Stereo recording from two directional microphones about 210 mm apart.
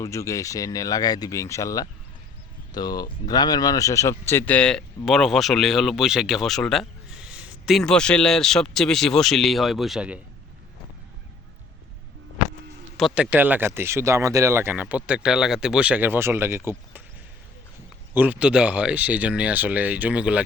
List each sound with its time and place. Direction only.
0.0 s speech: 15° left (ahead or behind); by 10.2 s 5° right (ahead or behind)
13.0 s speech: 5° right (ahead or behind)
18.1 s speech: 10° right (ahead or behind)